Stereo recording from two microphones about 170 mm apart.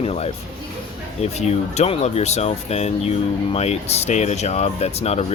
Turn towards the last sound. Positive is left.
turn(degrees=40)  # may be behind; listen again after turning